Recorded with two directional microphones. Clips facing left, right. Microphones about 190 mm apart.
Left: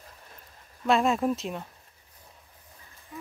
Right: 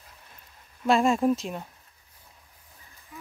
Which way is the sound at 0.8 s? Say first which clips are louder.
Right 2 dB; centre (ahead or behind).